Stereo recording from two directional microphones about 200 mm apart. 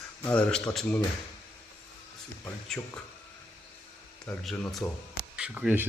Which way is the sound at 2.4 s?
10° left (ahead or behind).